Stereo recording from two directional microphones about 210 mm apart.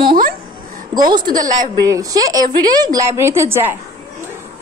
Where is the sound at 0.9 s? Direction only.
20° right (ahead or behind).